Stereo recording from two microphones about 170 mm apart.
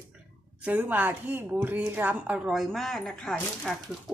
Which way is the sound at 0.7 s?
10° right (ahead or behind).